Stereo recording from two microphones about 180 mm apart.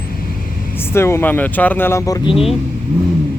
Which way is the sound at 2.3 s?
30° left (ahead or behind).